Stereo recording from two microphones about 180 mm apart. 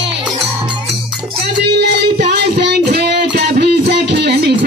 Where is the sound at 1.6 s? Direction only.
75° right (ahead or behind).